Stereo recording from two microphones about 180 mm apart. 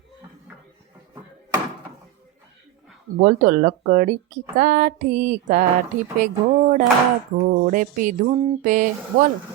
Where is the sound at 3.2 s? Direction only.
45° right (ahead or behind).